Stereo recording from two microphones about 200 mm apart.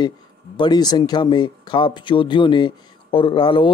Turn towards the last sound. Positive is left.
turn(degrees=25)  # may be behind; listen again after turning